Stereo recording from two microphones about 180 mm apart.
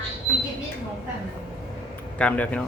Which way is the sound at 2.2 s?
5° left (ahead or behind).